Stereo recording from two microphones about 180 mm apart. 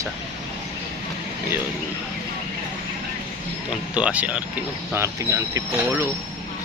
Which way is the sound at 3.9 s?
5° right (ahead or behind).